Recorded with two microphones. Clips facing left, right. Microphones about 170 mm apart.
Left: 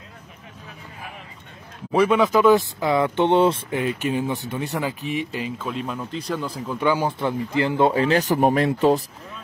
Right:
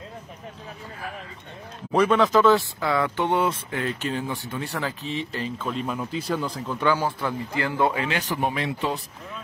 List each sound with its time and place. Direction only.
1.9 s speech: 10° left (ahead or behind); by 3.6 s 30° left (ahead or behind)
3.7 s speech: 15° left (ahead or behind); by 9.0 s 45° left (ahead or behind)